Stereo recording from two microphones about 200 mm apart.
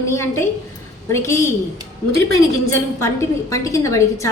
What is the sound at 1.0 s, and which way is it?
Speech, 15° left (ahead or behind).